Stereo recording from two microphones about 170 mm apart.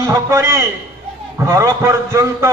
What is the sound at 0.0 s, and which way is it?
A man's voice, 15° right (ahead or behind).